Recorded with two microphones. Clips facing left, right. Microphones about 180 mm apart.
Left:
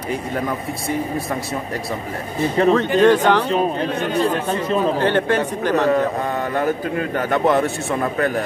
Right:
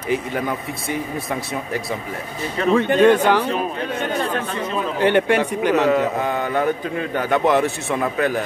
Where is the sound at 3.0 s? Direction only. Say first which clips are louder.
Even; 10° right (ahead or behind).